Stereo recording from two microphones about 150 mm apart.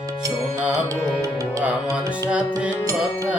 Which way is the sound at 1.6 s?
20° right (ahead or behind).